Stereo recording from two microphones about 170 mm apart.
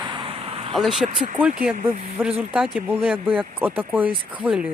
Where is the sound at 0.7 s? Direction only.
Centre (ahead or behind).